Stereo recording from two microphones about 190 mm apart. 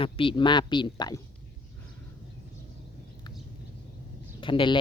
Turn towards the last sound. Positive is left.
turn(degrees=25)  # may be behind; listen again after turning